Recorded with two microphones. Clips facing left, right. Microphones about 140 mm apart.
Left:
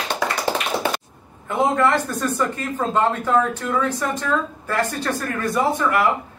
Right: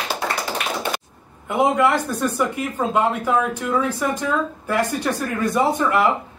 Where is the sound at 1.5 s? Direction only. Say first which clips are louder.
Right 1 dB; 10° right (ahead or behind).